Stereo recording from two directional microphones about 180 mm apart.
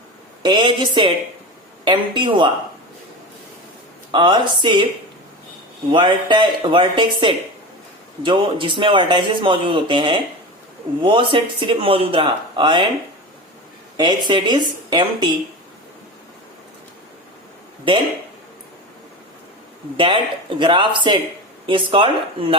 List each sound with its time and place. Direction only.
0.4 s speech: 25° right (ahead or behind)
4.1 s speech: 25° right (ahead or behind)
5.9 s speech: 25° right (ahead or behind)
13.9 s speech: 25° right (ahead or behind)
20.0 s speech: 25° right (ahead or behind)